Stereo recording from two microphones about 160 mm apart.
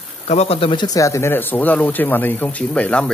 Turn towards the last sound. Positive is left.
turn(degrees=10)  # may be behind; listen again after turning